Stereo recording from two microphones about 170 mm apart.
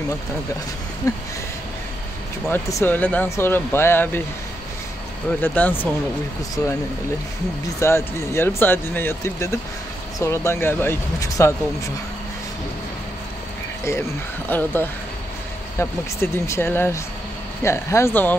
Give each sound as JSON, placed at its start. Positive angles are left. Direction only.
{"t": 1.0, "sound": "a sound", "side_deg": 20}
{"t": 2.5, "sound": "speech", "side_deg": 10}
{"t": 5.4, "sound": "speech", "side_deg": 10}
{"t": 7.8, "sound": "speech", "side_deg": 15}
{"t": 14.5, "sound": "speech", "side_deg": 10}